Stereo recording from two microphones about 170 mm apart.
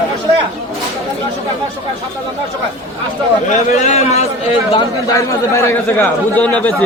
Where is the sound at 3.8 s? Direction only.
40° left (ahead or behind).